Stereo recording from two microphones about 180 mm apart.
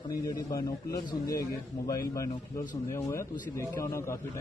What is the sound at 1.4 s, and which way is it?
A man's voice, 20° left (ahead or behind).